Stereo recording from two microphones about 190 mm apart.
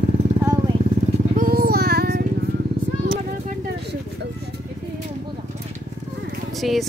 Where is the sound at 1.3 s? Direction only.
50° right (ahead or behind).